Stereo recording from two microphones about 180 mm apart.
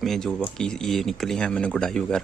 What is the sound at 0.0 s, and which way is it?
Speech, centre (ahead or behind).